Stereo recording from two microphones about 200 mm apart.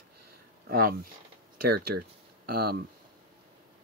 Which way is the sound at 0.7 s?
45° right (ahead or behind).